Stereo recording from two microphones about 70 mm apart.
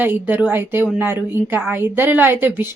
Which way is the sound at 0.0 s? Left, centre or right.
Right.